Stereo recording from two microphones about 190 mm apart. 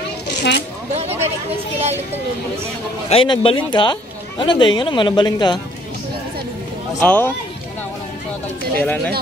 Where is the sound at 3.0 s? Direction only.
30° left (ahead or behind).